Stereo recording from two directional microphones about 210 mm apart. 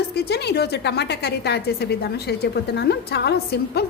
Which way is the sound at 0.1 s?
50° left (ahead or behind).